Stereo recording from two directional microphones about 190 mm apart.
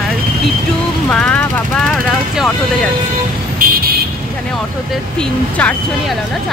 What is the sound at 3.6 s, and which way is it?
Vehicle, 50° right (ahead or behind).